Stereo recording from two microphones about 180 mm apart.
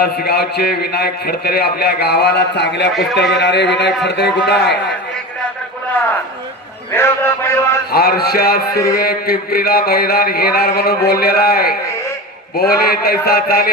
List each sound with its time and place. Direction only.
0.0 s a man's voice: 60° left (ahead or behind)
6.9 s a sound: 15° left (ahead or behind)
7.9 s a man's voice: 60° left (ahead or behind)